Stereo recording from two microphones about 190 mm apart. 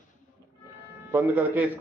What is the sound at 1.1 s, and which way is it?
Speech, 10° right (ahead or behind).